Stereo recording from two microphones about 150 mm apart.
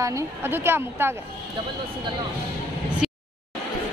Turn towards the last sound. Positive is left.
turn(degrees=-5)  # may be behind; listen again after turning